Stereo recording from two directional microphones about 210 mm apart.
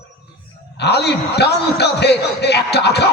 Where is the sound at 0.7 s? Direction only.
50° left (ahead or behind).